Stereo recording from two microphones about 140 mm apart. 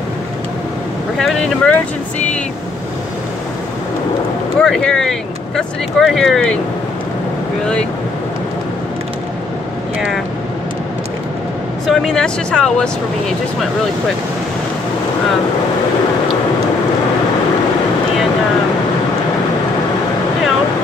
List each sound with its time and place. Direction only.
1.2 s speech: 5° left (ahead or behind)
4.6 s speech: 5° left (ahead or behind)
11.8 s speech: 5° left (ahead or behind)